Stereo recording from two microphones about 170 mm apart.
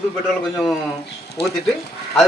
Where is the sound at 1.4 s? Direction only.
75° left (ahead or behind).